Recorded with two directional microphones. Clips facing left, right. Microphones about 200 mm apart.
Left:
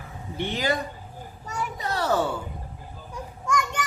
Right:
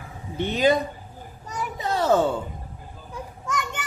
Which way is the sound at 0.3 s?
20° right (ahead or behind).